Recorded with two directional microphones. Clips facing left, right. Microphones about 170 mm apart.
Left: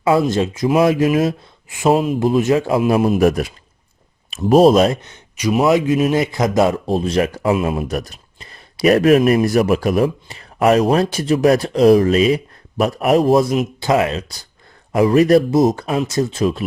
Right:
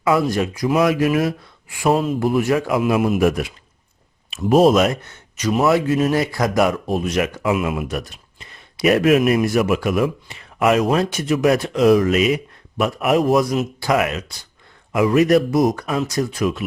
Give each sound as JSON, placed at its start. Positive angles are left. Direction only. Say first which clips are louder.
{"t": 0.0, "sound": "speech", "louder": "left 3 dB", "side_deg": 25}
{"t": 5.0, "sound": "speech", "louder": "left 2 dB", "side_deg": 15}